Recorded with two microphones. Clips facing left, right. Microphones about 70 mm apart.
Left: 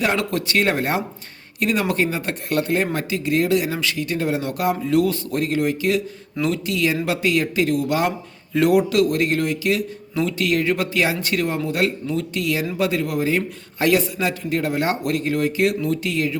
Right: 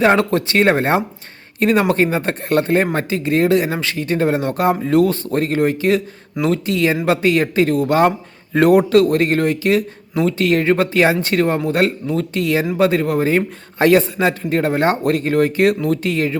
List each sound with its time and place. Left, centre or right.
0.0 s speech: right